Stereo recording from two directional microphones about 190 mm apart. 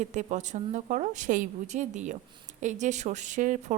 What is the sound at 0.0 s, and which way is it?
A woman's voice, 40° right (ahead or behind).